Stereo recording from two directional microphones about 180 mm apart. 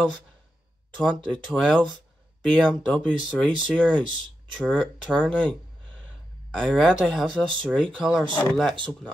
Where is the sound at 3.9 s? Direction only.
25° right (ahead or behind).